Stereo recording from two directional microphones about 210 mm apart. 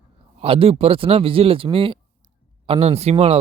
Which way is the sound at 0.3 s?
25° right (ahead or behind).